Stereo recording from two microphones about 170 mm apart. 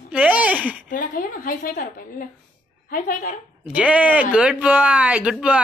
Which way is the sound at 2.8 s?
55° left (ahead or behind).